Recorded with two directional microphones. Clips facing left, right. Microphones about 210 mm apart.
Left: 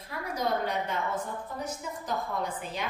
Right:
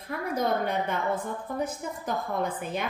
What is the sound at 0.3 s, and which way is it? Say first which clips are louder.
A woman's voice: right 3 dB; 55° right (ahead or behind).